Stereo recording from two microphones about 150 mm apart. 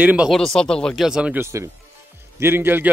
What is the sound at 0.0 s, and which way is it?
Speech, 10° right (ahead or behind).